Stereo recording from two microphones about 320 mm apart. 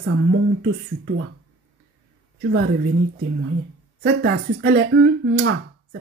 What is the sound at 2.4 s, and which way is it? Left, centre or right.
Speech, right.